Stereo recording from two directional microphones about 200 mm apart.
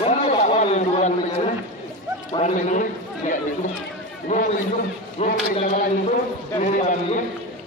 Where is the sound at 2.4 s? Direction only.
40° left (ahead or behind).